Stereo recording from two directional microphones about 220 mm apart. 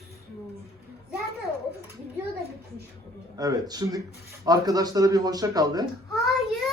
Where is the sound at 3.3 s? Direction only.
15° right (ahead or behind).